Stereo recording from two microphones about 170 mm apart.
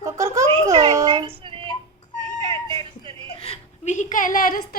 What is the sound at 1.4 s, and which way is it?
Child singing, 30° right (ahead or behind).